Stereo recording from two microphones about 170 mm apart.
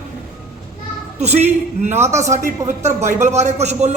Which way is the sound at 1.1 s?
40° right (ahead or behind).